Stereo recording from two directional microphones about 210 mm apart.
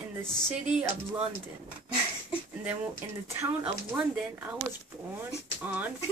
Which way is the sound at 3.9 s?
10° right (ahead or behind).